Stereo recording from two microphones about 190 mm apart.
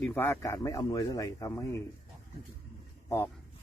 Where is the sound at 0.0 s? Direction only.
10° left (ahead or behind).